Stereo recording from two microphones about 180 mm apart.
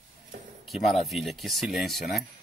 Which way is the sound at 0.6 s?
Centre (ahead or behind).